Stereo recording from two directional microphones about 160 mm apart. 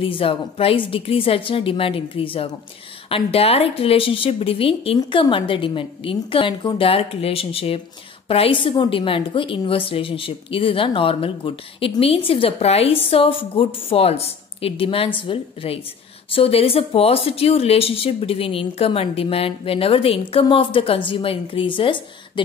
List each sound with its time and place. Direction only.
0.0 s speech: 35° left (ahead or behind)